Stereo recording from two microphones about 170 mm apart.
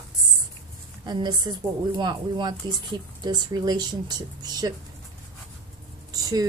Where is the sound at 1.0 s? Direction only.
25° right (ahead or behind).